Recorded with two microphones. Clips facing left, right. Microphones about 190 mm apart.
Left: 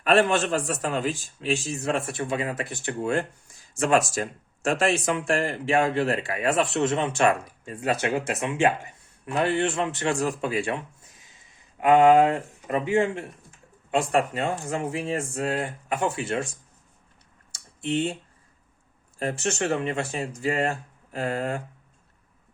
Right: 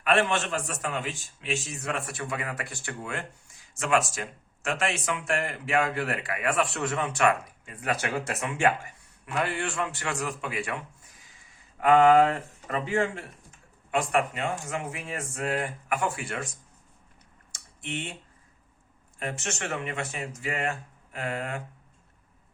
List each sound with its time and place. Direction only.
0.0 s a man's voice: 35° left (ahead or behind)
11.8 s speech: 15° left (ahead or behind)
13.9 s speech: 35° left (ahead or behind)
17.5 s typing: 30° left (ahead or behind)
19.2 s a man's voice: 35° left (ahead or behind)